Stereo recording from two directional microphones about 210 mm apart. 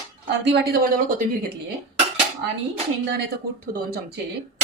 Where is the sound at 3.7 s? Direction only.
45° right (ahead or behind).